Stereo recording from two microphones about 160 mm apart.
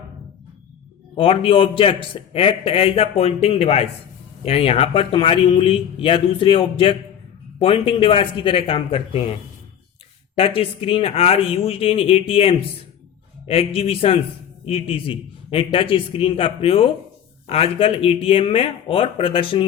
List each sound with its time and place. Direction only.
1.1 s a man's voice: 35° left (ahead or behind)
10.3 s a man's voice: 35° left (ahead or behind)